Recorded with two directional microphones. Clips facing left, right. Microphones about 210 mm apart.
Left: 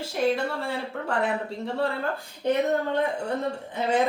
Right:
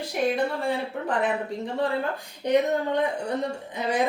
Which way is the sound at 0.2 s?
15° right (ahead or behind).